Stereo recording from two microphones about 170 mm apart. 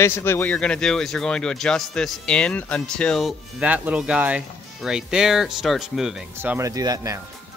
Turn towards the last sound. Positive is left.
turn(degrees=-20)  # may be behind; listen again after turning